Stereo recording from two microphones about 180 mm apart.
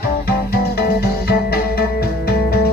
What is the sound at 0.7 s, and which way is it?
Music, 60° left (ahead or behind).